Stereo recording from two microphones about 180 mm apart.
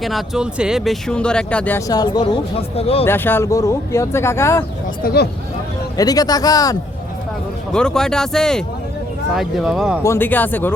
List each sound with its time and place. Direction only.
0.0 s speech: centre (ahead or behind)
1.9 s speech: 20° left (ahead or behind)
3.0 s speech: 10° left (ahead or behind)
5.0 s speech: 65° left (ahead or behind)
6.0 s speech: 20° left (ahead or behind)
7.7 s speech: 5° left (ahead or behind)
10.0 s speech: 15° left (ahead or behind)